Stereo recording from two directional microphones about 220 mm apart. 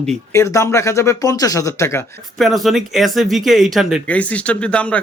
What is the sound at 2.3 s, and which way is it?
Speech, centre (ahead or behind).